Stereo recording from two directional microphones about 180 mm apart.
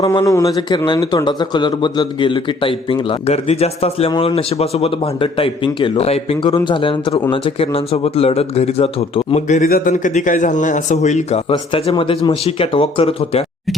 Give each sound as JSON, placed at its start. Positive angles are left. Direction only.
{"t": 0.0, "sound": "a man's voice", "side_deg": 20}
{"t": 9.6, "sound": "a man's voice", "side_deg": 55}
{"t": 9.9, "sound": "a man's voice", "side_deg": 45}